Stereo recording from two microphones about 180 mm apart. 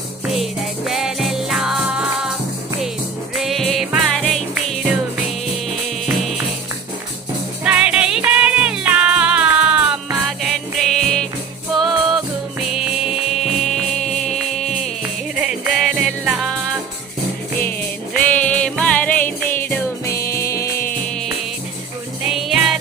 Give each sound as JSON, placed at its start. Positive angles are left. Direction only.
{"t": 0.9, "sound": "music", "side_deg": 0}
{"t": 3.3, "sound": "music", "side_deg": 0}
{"t": 6.1, "sound": "music", "side_deg": 0}
{"t": 7.6, "sound": "music", "side_deg": -5}
{"t": 17.7, "sound": "music", "side_deg": 50}
{"t": 18.4, "sound": "music", "side_deg": 5}
{"t": 22.3, "sound": "music", "side_deg": 0}